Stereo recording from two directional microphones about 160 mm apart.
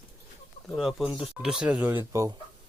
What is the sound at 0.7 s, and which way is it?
Speech, 5° right (ahead or behind).